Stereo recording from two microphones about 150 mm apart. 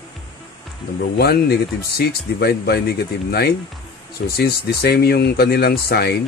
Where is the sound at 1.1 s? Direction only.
90° left.